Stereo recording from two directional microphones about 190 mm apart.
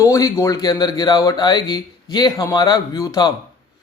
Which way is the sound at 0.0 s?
15° left (ahead or behind).